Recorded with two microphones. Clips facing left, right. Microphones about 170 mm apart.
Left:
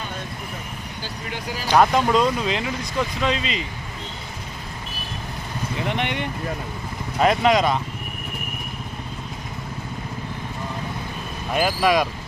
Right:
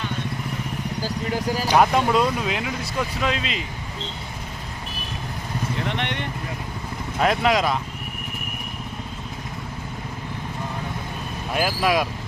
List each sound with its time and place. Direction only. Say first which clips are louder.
1.0 s speech: right 6 dB; 40° right (ahead or behind)
1.6 s speech: left 2 dB; 5° right (ahead or behind)
5.8 s vehicle: left 5 dB; 5° left (ahead or behind)
7.2 s speech: left 2 dB; centre (ahead or behind)
11.5 s speech: left 2 dB; 5° right (ahead or behind)